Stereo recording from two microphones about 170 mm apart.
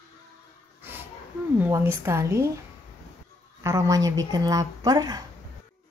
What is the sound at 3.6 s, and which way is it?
Speech, 20° right (ahead or behind).